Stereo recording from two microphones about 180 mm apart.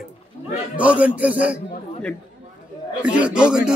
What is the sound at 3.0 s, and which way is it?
Speech, 5° right (ahead or behind).